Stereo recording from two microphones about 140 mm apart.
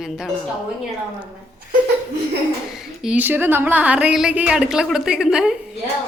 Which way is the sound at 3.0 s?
10° right (ahead or behind).